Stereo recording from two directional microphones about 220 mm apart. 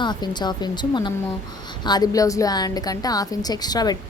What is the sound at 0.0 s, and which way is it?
A woman's voice, 20° left (ahead or behind).